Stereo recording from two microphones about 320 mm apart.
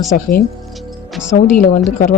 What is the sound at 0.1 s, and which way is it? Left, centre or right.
Speech, left.